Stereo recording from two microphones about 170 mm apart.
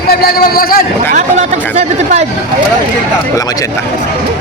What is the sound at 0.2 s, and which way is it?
Speech, 65° left (ahead or behind).